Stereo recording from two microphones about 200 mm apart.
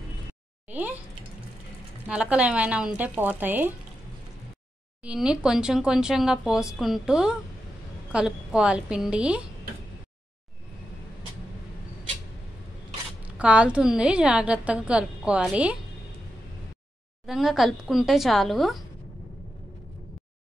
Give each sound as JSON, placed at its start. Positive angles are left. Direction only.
{"t": 0.7, "sound": "a sound", "side_deg": -10}
{"t": 2.0, "sound": "a woman's voice", "side_deg": -5}
{"t": 5.0, "sound": "a woman's voice", "side_deg": -5}
{"t": 13.4, "sound": "a woman's voice", "side_deg": -5}
{"t": 17.3, "sound": "a woman's voice", "side_deg": 0}